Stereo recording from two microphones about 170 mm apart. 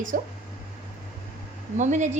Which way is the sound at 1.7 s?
45° right (ahead or behind).